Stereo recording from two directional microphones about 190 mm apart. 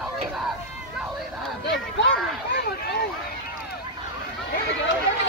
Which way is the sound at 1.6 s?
65° left (ahead or behind).